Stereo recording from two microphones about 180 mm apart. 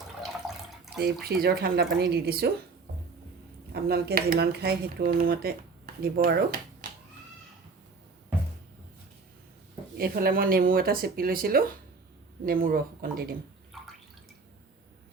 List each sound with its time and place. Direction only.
0.2 s water: centre (ahead or behind)
0.9 s speech: 60° right (ahead or behind)
3.8 s speech: 55° right (ahead or behind)
10.0 s speech: 55° right (ahead or behind)
13.7 s drip: centre (ahead or behind)